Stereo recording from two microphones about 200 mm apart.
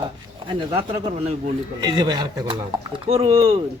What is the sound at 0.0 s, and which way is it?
Speech, 25° right (ahead or behind).